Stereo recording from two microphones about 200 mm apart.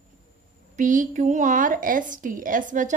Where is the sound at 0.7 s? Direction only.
40° right (ahead or behind).